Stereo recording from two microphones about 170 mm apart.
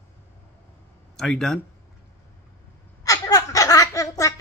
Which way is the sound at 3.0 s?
20° left (ahead or behind).